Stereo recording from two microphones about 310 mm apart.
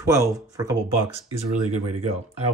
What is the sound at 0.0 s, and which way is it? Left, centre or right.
Speech, centre.